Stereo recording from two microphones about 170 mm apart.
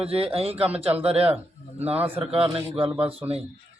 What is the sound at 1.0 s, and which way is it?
Speech, 35° right (ahead or behind).